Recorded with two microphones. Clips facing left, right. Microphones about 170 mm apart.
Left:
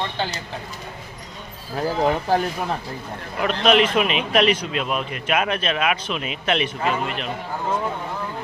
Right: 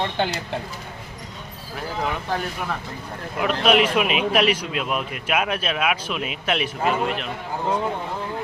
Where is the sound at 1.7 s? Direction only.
35° left (ahead or behind).